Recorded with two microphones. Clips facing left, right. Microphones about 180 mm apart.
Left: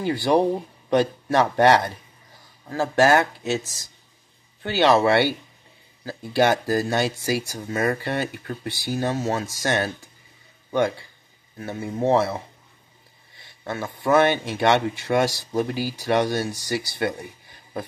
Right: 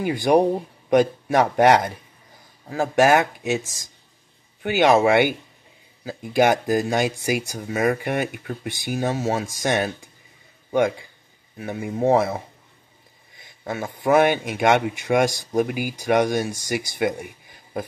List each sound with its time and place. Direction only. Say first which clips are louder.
0.0 s speech: right 2 dB; 15° right (ahead or behind)
13.4 s speech: right 1 dB; 15° right (ahead or behind)